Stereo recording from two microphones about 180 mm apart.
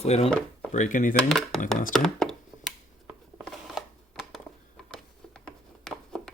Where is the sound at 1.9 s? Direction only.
Centre (ahead or behind).